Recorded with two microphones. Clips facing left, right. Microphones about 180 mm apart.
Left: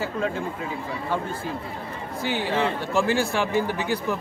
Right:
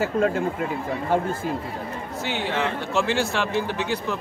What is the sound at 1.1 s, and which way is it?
Speech, 45° right (ahead or behind).